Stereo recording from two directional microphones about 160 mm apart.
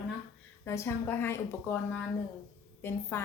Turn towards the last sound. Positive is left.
turn(degrees=15)  # may be behind; listen again after turning